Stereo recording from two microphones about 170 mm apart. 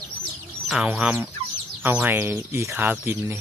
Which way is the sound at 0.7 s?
5° right (ahead or behind).